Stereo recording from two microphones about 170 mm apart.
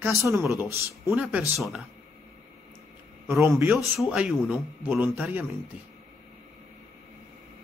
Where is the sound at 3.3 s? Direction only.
15° right (ahead or behind).